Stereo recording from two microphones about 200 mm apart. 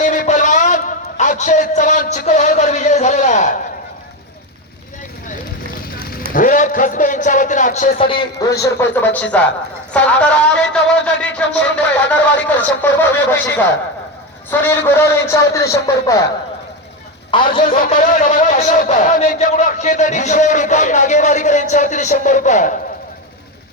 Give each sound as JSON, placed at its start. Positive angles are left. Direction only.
{"t": 0.0, "sound": "a sound", "side_deg": 40}
{"t": 6.3, "sound": "a man's voice", "side_deg": 45}
{"t": 17.3, "sound": "a man's voice", "side_deg": 25}
{"t": 17.6, "sound": "a man's voice", "side_deg": 45}